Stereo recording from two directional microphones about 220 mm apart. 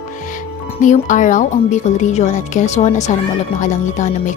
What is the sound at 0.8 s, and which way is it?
A woman's voice, 35° left (ahead or behind).